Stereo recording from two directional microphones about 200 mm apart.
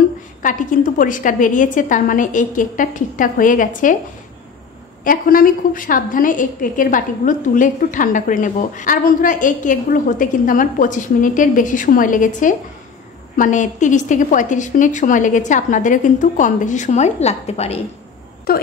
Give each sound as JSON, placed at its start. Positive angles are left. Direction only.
{"t": 0.4, "sound": "a woman's voice", "side_deg": 40}
{"t": 5.0, "sound": "a woman's voice", "side_deg": 45}
{"t": 18.5, "sound": "speech", "side_deg": 50}